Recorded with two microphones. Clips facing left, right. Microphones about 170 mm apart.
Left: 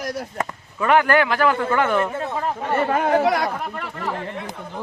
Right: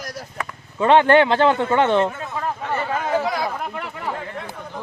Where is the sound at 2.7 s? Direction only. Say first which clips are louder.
Left 6 dB; 55° left (ahead or behind).